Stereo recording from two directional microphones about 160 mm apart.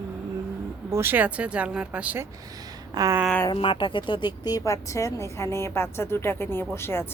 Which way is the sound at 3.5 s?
35° left (ahead or behind).